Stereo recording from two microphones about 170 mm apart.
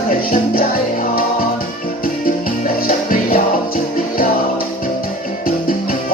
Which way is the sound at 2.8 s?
60° left (ahead or behind).